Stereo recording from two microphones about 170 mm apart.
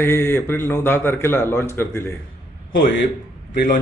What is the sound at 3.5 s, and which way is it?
Speech, 55° left (ahead or behind).